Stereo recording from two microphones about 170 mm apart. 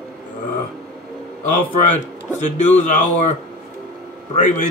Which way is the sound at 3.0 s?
45° left (ahead or behind).